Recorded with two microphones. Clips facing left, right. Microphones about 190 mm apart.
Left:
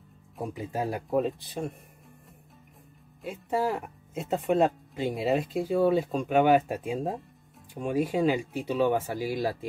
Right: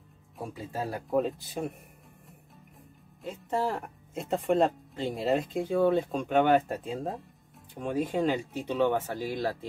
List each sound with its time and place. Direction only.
0.4 s speech: 20° left (ahead or behind)
1.1 s speech: centre (ahead or behind)
3.2 s speech: 5° left (ahead or behind)